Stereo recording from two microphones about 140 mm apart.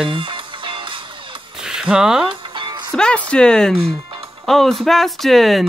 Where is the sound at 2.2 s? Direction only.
35° right (ahead or behind).